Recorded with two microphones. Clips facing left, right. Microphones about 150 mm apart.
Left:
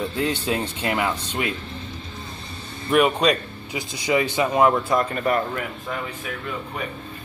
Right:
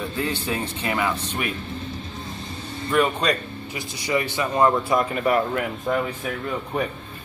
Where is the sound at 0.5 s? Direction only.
15° left (ahead or behind).